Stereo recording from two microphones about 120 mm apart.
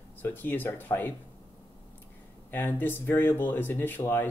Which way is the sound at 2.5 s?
15° left (ahead or behind).